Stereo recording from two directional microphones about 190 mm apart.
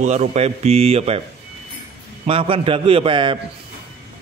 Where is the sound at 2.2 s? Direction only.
30° right (ahead or behind).